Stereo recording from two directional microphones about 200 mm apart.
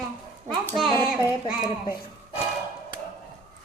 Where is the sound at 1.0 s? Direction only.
Centre (ahead or behind).